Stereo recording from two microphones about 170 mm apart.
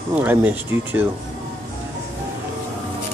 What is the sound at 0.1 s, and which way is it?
Speech, 10° right (ahead or behind).